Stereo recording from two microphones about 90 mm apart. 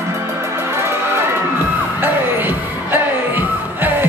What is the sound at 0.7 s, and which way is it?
Music, 30° right (ahead or behind).